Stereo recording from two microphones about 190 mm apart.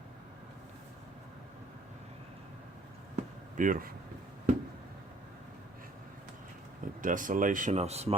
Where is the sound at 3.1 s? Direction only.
45° right (ahead or behind).